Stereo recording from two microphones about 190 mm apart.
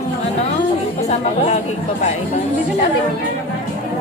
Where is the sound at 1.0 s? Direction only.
35° left (ahead or behind).